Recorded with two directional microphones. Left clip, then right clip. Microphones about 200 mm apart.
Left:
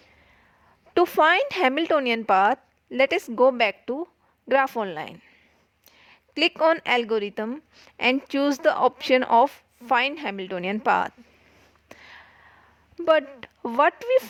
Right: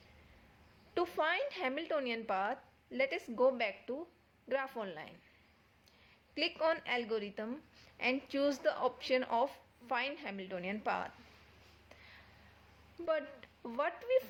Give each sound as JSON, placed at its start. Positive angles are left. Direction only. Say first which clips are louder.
{"t": 0.9, "sound": "a woman's voice", "louder": "left 16 dB", "side_deg": 55}
{"t": 11.9, "sound": "a sound", "louder": "left 13 dB", "side_deg": 55}
{"t": 13.0, "sound": "speech", "louder": "left 16 dB", "side_deg": 55}